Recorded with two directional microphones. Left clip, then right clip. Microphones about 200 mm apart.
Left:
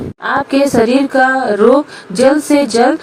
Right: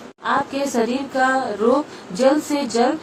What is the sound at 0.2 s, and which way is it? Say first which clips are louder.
A woman's voice: left 8 dB; 40° left (ahead or behind).